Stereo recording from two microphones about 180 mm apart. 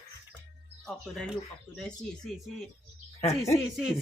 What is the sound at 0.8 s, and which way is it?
Speech, centre (ahead or behind).